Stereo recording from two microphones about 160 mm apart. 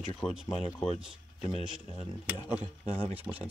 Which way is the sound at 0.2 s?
5° right (ahead or behind).